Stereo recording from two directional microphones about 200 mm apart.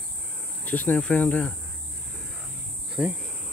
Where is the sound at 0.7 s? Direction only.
10° left (ahead or behind).